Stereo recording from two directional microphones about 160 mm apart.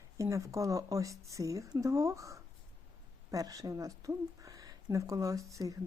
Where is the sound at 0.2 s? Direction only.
20° right (ahead or behind).